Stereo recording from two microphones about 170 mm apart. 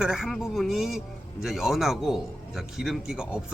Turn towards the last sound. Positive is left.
turn(degrees=-5)  # may be behind; listen again after turning